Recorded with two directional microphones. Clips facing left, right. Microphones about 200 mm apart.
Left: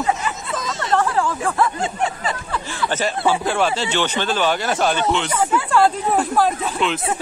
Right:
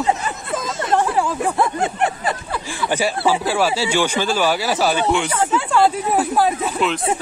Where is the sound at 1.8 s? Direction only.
60° right (ahead or behind).